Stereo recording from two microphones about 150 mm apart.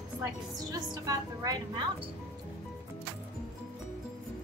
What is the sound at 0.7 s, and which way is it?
A woman's voice, 25° right (ahead or behind).